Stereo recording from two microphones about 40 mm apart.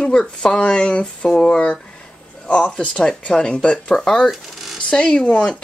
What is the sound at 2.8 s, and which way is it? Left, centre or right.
Speech, centre.